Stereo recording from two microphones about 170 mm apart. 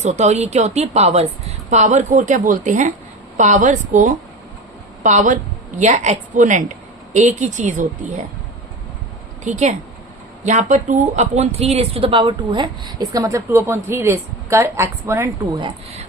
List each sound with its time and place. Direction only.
0.0 s a woman's voice: 40° right (ahead or behind)
9.4 s a woman's voice: 45° right (ahead or behind); by 15.3 s 15° right (ahead or behind)